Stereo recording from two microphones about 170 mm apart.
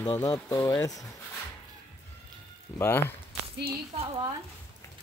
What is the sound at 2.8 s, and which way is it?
Speech, 15° left (ahead or behind).